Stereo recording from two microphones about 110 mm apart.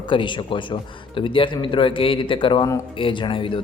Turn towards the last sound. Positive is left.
turn(degrees=50)  # may be behind; listen again after turning